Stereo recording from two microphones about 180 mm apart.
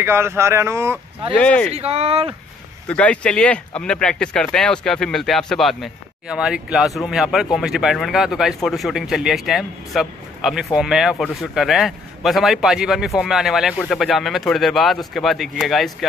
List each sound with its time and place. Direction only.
0.0 s speech: 15° right (ahead or behind)
1.3 s speech: 5° left (ahead or behind)
1.7 s speech: 35° right (ahead or behind)
2.9 s speech: 5° left (ahead or behind)